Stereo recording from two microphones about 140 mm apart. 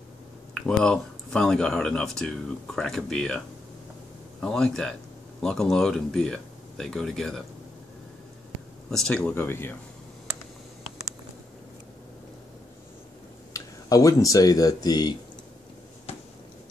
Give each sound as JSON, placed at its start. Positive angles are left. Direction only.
{"t": 0.6, "sound": "speech", "side_deg": 5}
{"t": 8.9, "sound": "speech", "side_deg": 5}
{"t": 13.5, "sound": "speech", "side_deg": 25}
{"t": 16.1, "sound": "a sound", "side_deg": 45}